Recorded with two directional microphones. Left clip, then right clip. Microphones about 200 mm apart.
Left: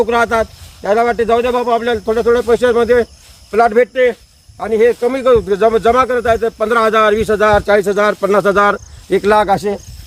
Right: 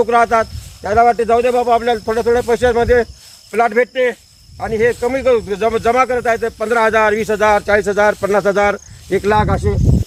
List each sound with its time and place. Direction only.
0.0 s speech: 60° left (ahead or behind)